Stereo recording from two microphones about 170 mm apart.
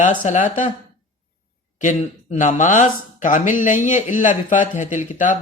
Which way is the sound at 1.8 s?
45° left (ahead or behind).